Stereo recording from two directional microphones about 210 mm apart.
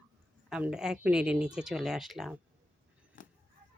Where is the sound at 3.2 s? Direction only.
40° left (ahead or behind).